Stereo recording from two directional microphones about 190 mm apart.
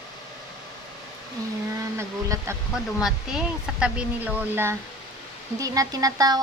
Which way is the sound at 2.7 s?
5° right (ahead or behind).